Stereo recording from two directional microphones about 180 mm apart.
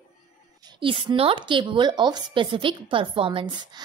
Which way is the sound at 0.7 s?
30° right (ahead or behind).